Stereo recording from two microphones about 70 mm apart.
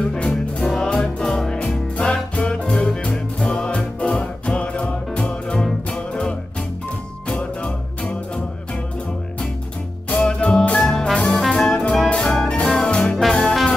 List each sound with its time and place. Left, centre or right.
0.0 s music: centre
10.1 s music: centre
11.3 s brass instrument: centre
12.2 s music: centre